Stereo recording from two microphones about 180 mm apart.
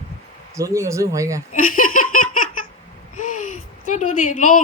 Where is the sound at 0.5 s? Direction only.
15° right (ahead or behind).